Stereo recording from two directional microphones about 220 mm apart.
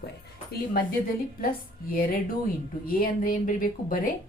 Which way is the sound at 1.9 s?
40° left (ahead or behind).